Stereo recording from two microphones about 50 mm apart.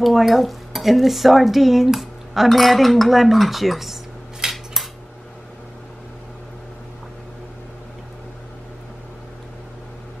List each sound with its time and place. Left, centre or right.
0.0 s dishes: centre